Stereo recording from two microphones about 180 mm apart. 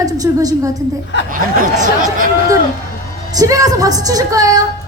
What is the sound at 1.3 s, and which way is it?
Speech, 50° right (ahead or behind).